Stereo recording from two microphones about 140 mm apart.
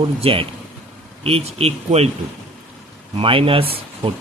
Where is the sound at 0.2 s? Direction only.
40° right (ahead or behind).